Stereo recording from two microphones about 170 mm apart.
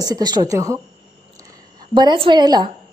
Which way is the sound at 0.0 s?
25° right (ahead or behind).